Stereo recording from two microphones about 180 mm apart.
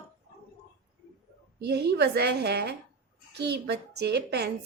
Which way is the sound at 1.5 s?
65° right (ahead or behind).